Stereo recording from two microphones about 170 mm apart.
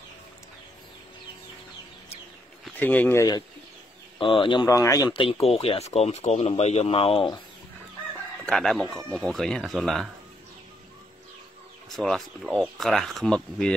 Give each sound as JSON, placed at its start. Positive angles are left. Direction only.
{"t": 2.6, "sound": "speech", "side_deg": 10}
{"t": 4.2, "sound": "speech", "side_deg": 30}
{"t": 8.5, "sound": "speech", "side_deg": 0}
{"t": 11.9, "sound": "speech", "side_deg": 0}